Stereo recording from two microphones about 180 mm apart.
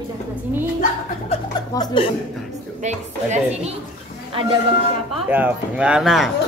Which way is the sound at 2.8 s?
40° right (ahead or behind).